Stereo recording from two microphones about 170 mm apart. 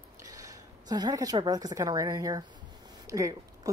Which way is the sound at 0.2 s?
20° right (ahead or behind).